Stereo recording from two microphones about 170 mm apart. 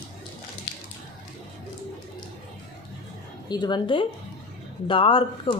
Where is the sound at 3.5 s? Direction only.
25° left (ahead or behind).